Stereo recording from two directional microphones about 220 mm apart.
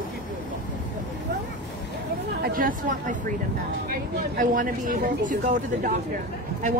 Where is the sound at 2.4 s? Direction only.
40° right (ahead or behind).